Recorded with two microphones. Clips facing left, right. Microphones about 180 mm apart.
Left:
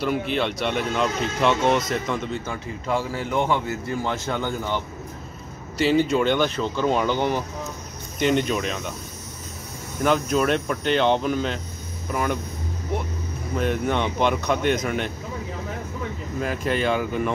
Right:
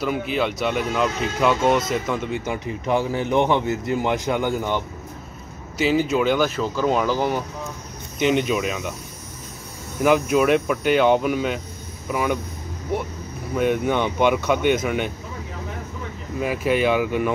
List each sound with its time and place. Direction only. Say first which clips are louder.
0.0 s speech: right 1 dB; centre (ahead or behind)
2.4 s a man's voice: right 4 dB; 15° right (ahead or behind)
5.8 s speech: even; 5° right (ahead or behind)
10.0 s a man's voice: right 3 dB; 10° right (ahead or behind)
13.6 s a man's voice: right 3 dB; 5° right (ahead or behind)
16.3 s speech: right 4 dB; 5° right (ahead or behind)